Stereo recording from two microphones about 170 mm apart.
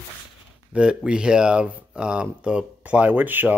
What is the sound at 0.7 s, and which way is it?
Speech, 5° right (ahead or behind).